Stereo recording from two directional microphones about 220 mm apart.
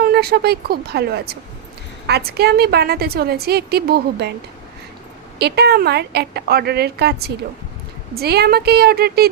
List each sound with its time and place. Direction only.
0.0 s a woman's voice: 45° right (ahead or behind)
5.4 s a woman's voice: 50° right (ahead or behind)